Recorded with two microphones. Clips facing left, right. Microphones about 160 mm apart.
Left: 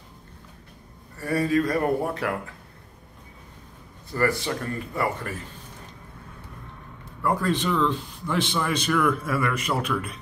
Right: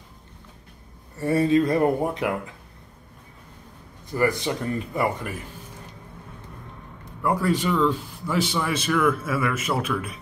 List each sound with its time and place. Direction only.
1.1 s speech: 25° right (ahead or behind)
4.1 s speech: 20° right (ahead or behind)
7.2 s a man's voice: 10° right (ahead or behind)